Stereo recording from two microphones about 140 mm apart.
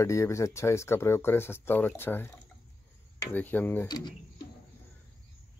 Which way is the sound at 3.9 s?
30° left (ahead or behind).